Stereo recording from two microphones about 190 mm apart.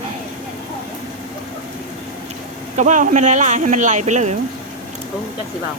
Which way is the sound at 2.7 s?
40° right (ahead or behind).